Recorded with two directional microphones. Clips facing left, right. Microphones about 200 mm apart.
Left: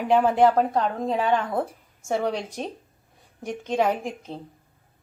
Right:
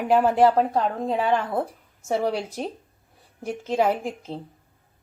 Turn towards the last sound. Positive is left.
turn(degrees=-5)  # may be behind; listen again after turning